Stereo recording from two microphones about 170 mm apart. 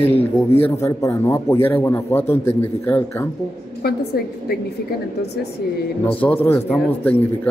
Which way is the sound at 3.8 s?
65° left (ahead or behind).